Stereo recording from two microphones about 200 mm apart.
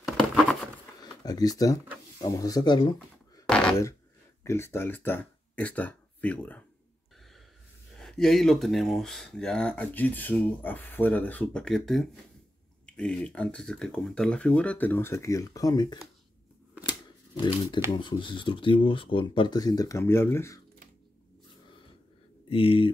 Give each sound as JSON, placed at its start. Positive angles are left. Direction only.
{"t": 0.0, "sound": "patter", "side_deg": 0}
{"t": 1.0, "sound": "speech", "side_deg": 20}
{"t": 3.4, "sound": "a sound", "side_deg": 5}
{"t": 4.5, "sound": "speech", "side_deg": 10}
{"t": 8.0, "sound": "speech", "side_deg": 0}
{"t": 17.3, "sound": "speech", "side_deg": 20}
{"t": 22.5, "sound": "speech", "side_deg": 30}